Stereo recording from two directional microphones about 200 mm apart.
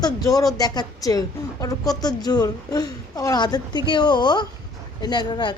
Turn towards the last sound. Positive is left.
turn(degrees=25)  # may be behind; listen again after turning